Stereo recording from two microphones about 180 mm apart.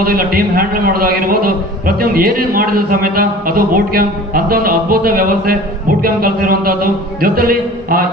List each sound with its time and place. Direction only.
0.0 s a man's voice: 55° right (ahead or behind)